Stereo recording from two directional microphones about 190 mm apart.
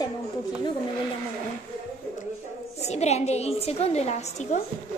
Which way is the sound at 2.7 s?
35° left (ahead or behind).